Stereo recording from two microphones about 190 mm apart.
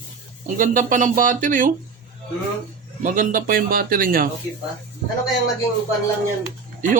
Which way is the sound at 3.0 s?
45° right (ahead or behind).